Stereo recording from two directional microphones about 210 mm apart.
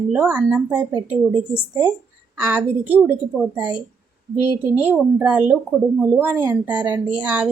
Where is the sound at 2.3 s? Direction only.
10° right (ahead or behind).